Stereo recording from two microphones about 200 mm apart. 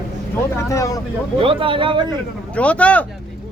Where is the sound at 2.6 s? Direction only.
5° left (ahead or behind).